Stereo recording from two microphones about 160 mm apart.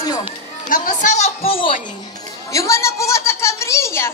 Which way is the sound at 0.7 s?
55° left (ahead or behind).